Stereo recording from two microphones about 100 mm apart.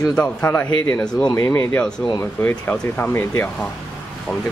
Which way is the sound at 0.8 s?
35° left (ahead or behind).